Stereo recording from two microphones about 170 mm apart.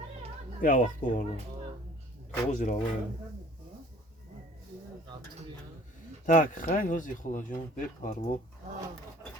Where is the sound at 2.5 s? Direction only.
45° left (ahead or behind).